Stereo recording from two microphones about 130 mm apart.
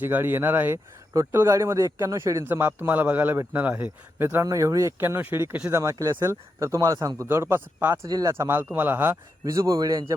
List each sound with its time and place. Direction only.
0.0 s speech: 15° right (ahead or behind)
4.4 s speech: 25° right (ahead or behind)
8.0 s speech: 30° right (ahead or behind)
9.4 s speech: 25° right (ahead or behind)